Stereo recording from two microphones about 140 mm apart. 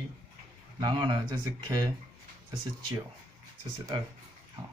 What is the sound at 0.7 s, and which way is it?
Speech, 30° right (ahead or behind).